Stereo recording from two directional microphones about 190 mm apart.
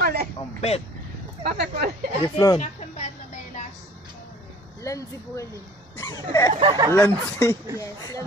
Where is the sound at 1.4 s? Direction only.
55° right (ahead or behind).